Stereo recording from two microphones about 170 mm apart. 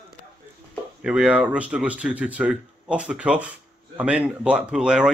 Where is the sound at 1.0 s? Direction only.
5° right (ahead or behind).